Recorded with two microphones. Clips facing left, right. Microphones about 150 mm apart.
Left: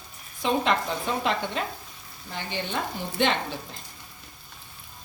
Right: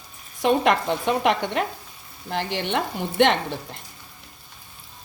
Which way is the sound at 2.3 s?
80° right.